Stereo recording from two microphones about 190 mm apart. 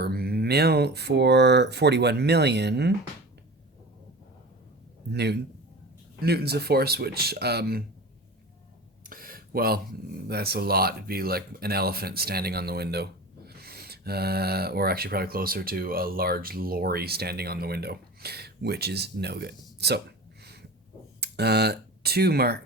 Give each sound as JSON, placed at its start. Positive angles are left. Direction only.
{"t": 0.0, "sound": "speech", "side_deg": -55}
{"t": 5.1, "sound": "speech", "side_deg": -60}
{"t": 9.0, "sound": "a sound", "side_deg": -50}
{"t": 10.2, "sound": "speech", "side_deg": -55}
{"t": 20.4, "sound": "a sound", "side_deg": -60}
{"t": 21.2, "sound": "speech", "side_deg": -60}